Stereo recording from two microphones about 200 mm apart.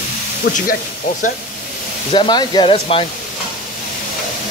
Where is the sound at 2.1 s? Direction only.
20° left (ahead or behind).